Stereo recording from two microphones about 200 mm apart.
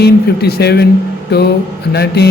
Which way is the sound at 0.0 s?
55° left (ahead or behind).